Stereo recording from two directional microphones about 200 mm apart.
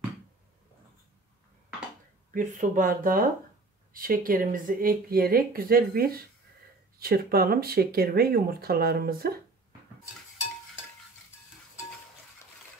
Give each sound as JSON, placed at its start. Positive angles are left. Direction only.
{"t": 2.3, "sound": "speech", "side_deg": -40}